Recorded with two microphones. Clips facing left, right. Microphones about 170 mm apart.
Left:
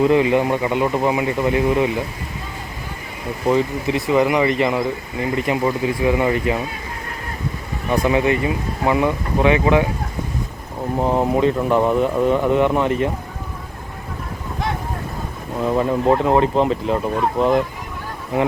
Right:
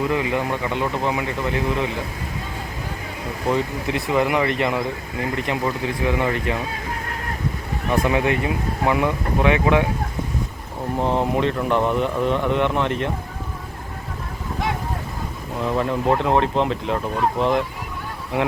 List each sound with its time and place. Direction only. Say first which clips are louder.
0.0 s speech: left 7 dB; 25° left (ahead or behind)
3.5 s speech: left 4 dB; centre (ahead or behind)
7.9 s speech: left 3 dB; centre (ahead or behind)
10.9 s speech: left 3 dB; 5° left (ahead or behind)
15.6 s speech: left 4 dB; 5° left (ahead or behind)